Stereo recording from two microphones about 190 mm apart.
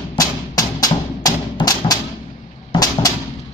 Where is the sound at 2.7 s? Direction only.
20° left (ahead or behind).